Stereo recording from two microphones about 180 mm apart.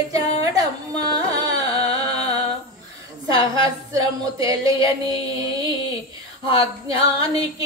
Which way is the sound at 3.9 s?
20° right (ahead or behind).